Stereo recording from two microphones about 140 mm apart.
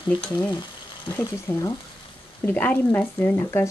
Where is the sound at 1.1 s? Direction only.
15° left (ahead or behind).